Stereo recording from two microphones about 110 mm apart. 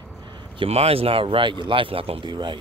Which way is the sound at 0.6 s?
70° right (ahead or behind).